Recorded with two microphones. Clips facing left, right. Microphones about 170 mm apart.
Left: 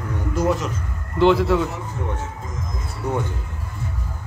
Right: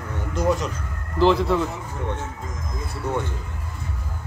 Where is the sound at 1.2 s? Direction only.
Centre (ahead or behind).